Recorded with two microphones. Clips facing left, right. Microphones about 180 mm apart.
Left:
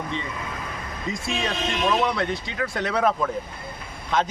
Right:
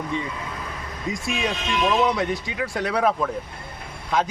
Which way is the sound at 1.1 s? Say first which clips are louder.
Right 1 dB; 15° right (ahead or behind).